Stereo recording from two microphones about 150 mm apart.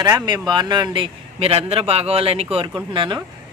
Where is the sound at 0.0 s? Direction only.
25° right (ahead or behind).